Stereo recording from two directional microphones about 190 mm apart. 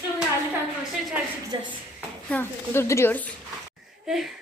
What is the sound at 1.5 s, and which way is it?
Speech, 25° right (ahead or behind).